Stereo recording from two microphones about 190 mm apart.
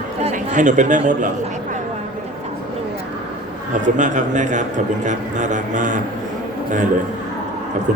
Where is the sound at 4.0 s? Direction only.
40° right (ahead or behind).